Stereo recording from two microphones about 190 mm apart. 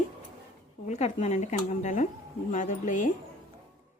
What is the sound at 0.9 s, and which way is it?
Speech, 35° left (ahead or behind).